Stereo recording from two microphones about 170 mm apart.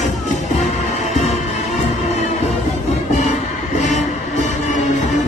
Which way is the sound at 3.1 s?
45° left (ahead or behind).